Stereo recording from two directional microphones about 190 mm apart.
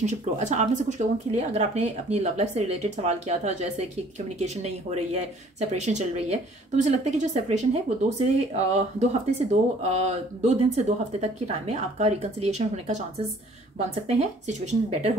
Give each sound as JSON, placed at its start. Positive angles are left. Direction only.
{"t": 0.0, "sound": "speech", "side_deg": -40}